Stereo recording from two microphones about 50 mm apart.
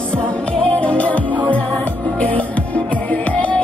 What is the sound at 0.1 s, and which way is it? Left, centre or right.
Music, left.